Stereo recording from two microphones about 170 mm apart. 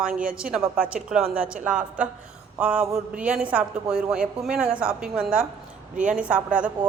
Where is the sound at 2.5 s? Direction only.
5° right (ahead or behind).